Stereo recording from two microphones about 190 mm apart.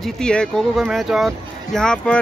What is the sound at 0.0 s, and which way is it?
Speech, 5° left (ahead or behind).